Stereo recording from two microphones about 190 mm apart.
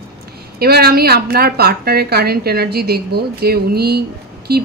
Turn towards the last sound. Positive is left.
turn(degrees=-55)  # may be behind; listen again after turning